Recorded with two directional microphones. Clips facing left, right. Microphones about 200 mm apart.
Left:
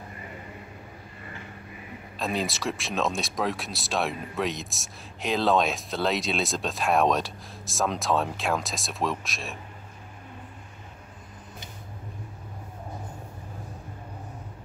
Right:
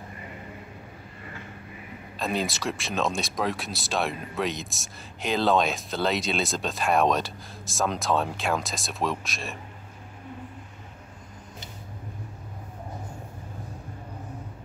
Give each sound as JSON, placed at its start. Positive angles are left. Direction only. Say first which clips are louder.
{"t": 2.1, "sound": "speech", "louder": "right 1 dB", "side_deg": 0}